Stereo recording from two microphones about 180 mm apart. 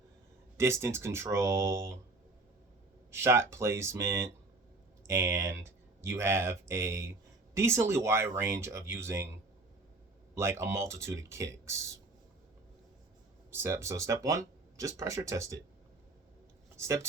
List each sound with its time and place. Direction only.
0.5 s speech: 15° right (ahead or behind)
3.1 s speech: 15° right (ahead or behind)
10.3 s speech: 15° right (ahead or behind)
13.5 s speech: 15° right (ahead or behind)
16.7 s speech: 15° right (ahead or behind)